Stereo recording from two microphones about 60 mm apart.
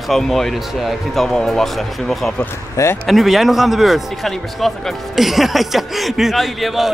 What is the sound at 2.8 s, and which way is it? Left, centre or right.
Speech, left.